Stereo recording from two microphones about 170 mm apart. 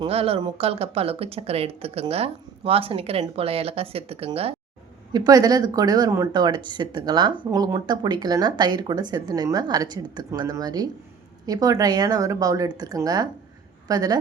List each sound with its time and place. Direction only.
0.1 s speech: 35° right (ahead or behind)
5.1 s speech: 20° right (ahead or behind)